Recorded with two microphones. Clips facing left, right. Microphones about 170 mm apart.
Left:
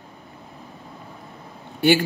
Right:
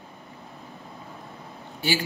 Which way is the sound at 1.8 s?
60° left (ahead or behind).